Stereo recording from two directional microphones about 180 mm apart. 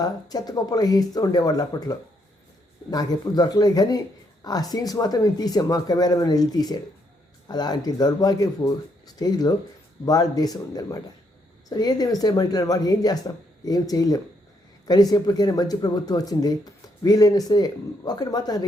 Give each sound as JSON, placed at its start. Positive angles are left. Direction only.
{"t": 0.0, "sound": "a woman's voice", "side_deg": 20}